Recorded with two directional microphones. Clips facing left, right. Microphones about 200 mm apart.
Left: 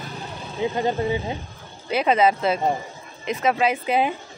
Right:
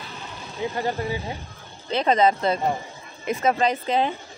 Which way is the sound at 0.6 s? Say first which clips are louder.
Left 4 dB; 20° left (ahead or behind).